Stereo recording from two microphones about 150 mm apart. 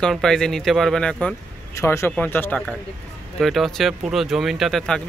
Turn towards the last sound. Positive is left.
turn(degrees=5)  # may be behind; listen again after turning